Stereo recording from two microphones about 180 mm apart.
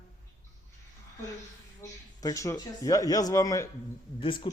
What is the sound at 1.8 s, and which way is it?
Speech, 20° left (ahead or behind).